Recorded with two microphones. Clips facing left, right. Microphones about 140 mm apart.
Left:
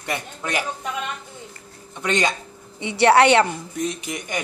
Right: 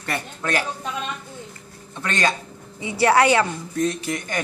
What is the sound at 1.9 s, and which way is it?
Speech, 20° left (ahead or behind).